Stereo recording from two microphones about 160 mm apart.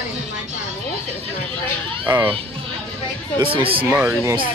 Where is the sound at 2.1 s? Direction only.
35° right (ahead or behind).